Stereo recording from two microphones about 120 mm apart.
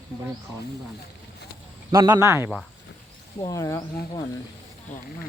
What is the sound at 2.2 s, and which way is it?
Speech, 20° right (ahead or behind).